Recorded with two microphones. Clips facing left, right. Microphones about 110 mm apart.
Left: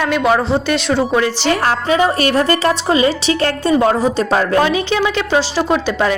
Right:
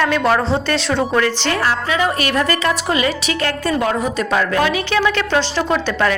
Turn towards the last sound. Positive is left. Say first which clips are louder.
# left 2 dB
turn(degrees=15)  # may be behind; listen again after turning